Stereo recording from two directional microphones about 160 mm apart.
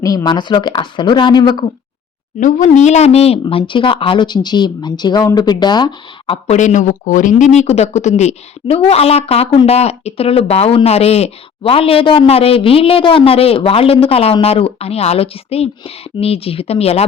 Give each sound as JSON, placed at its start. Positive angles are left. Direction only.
{"t": 0.0, "sound": "speech", "side_deg": 20}
{"t": 2.4, "sound": "a woman's voice", "side_deg": 50}
{"t": 6.6, "sound": "a woman's voice", "side_deg": 50}